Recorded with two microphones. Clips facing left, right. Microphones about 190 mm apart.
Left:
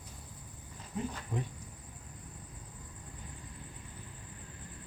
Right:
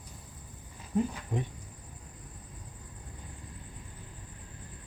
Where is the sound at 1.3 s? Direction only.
20° right (ahead or behind).